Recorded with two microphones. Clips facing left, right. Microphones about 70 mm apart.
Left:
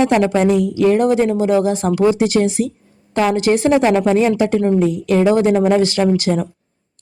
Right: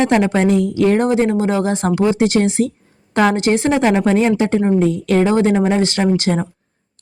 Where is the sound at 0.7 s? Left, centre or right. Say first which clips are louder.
Left 1 dB; right.